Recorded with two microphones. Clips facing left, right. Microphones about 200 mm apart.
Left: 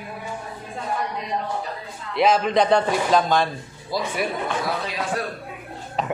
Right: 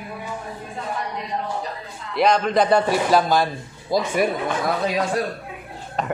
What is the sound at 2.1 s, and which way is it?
A man's voice, centre (ahead or behind).